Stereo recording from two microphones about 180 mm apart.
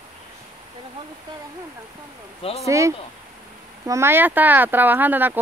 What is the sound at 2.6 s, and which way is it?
Speech, 15° right (ahead or behind).